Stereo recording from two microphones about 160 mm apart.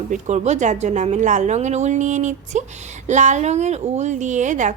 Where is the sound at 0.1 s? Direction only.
45° right (ahead or behind).